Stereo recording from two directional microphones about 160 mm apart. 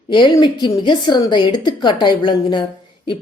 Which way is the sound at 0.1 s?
30° left (ahead or behind).